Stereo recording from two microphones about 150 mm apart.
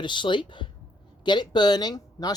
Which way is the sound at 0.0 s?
30° left (ahead or behind).